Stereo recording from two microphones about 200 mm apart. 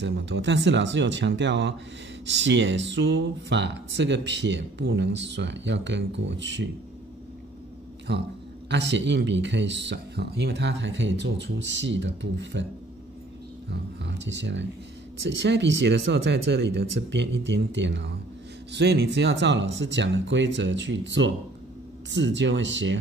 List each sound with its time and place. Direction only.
0.0 s speech: 60° right (ahead or behind)
8.1 s speech: 60° right (ahead or behind)
13.7 s speech: 60° right (ahead or behind)